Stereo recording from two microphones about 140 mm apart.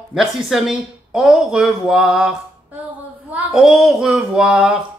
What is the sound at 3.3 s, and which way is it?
Speech, 5° right (ahead or behind).